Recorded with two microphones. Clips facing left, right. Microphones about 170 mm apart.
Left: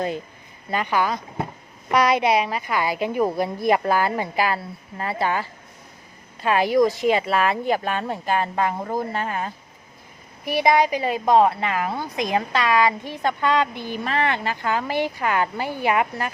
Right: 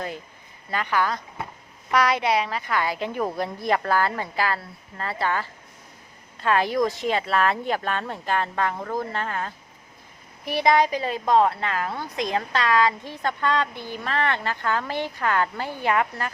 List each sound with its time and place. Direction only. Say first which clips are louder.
0.7 s a woman's voice: left 2 dB; 15° left (ahead or behind)